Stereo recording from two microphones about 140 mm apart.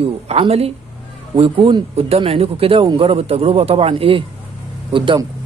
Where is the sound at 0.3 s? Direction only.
45° right (ahead or behind).